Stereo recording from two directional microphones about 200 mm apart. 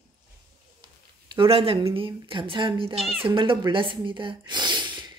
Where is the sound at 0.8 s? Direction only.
20° right (ahead or behind).